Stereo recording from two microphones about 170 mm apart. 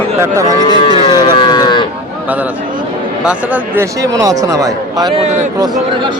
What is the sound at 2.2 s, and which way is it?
A man's voice, 10° right (ahead or behind).